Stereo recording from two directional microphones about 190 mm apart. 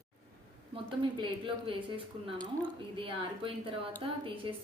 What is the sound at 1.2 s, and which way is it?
Speech, 25° right (ahead or behind).